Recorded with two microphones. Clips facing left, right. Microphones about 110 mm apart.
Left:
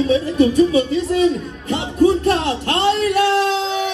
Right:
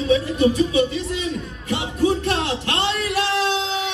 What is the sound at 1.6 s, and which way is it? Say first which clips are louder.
Music: left 5 dB; 35° left (ahead or behind).